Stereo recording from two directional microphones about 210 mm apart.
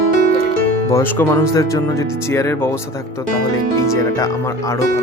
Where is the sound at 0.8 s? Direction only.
10° left (ahead or behind).